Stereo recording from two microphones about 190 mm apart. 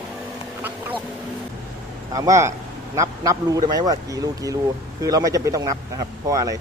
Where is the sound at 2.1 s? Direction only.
15° right (ahead or behind).